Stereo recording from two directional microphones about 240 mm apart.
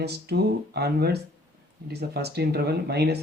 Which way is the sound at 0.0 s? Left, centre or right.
Right.